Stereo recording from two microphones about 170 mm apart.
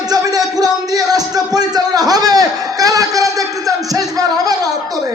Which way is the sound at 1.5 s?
25° right (ahead or behind).